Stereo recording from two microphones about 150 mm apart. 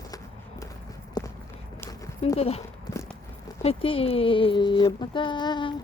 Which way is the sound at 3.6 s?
40° left (ahead or behind).